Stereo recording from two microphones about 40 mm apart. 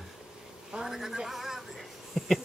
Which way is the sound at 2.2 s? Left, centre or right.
Centre.